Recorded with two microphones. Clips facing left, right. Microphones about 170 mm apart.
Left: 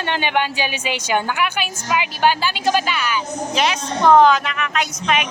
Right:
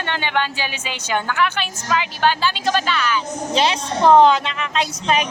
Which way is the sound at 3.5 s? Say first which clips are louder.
Right 2 dB; 30° right (ahead or behind).